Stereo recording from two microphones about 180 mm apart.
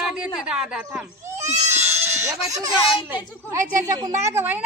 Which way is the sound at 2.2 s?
20° right (ahead or behind).